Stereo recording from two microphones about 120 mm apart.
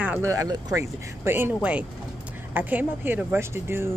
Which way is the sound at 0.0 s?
15° right (ahead or behind).